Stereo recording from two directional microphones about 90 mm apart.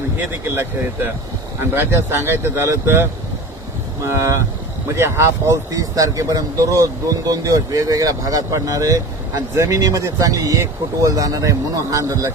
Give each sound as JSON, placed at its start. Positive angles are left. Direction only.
{"t": 0.2, "sound": "speech", "side_deg": -25}